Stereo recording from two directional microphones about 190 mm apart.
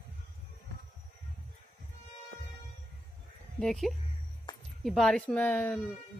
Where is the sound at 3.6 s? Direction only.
Centre (ahead or behind).